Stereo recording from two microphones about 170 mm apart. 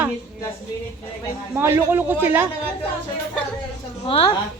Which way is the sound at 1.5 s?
15° right (ahead or behind).